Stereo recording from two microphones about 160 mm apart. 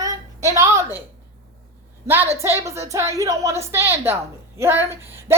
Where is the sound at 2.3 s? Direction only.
15° right (ahead or behind).